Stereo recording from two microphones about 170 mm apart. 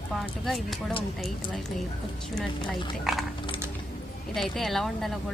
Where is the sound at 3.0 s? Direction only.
Centre (ahead or behind).